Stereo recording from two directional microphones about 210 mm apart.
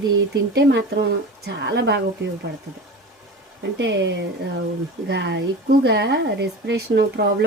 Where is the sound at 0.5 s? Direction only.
55° right (ahead or behind).